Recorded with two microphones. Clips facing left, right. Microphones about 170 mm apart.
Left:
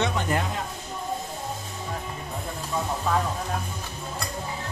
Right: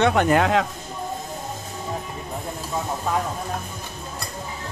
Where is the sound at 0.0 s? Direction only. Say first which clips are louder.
Right 8 dB; 65° right (ahead or behind); by 0.7 s 90° right.